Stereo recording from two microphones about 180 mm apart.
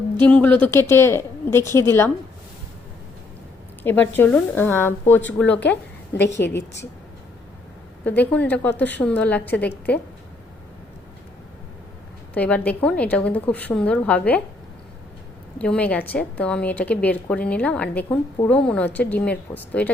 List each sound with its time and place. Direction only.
0.2 s a woman's voice: 10° left (ahead or behind)
3.8 s a woman's voice: 10° left (ahead or behind)
6.1 s a woman's voice: 75° left (ahead or behind)
8.0 s a woman's voice: 10° left (ahead or behind)
12.4 s a woman's voice: 10° left (ahead or behind)
15.5 s a woman's voice: 5° left (ahead or behind)